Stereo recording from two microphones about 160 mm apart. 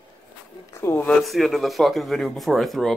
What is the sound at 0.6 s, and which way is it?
Speech, 15° left (ahead or behind).